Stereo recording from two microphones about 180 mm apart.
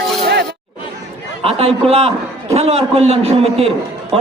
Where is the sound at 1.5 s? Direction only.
35° right (ahead or behind).